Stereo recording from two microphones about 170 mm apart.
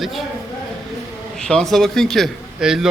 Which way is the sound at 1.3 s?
5° left (ahead or behind).